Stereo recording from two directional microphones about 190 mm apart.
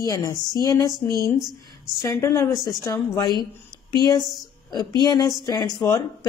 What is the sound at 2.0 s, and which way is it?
A woman's voice, 15° left (ahead or behind).